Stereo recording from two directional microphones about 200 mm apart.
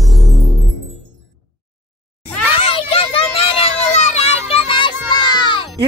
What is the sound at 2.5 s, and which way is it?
Children playing, 30° left (ahead or behind).